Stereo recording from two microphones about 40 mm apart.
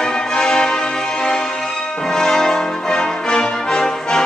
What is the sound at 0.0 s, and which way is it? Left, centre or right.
Music, centre.